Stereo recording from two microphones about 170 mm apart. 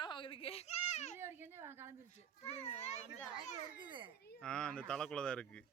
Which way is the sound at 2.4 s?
40° left (ahead or behind).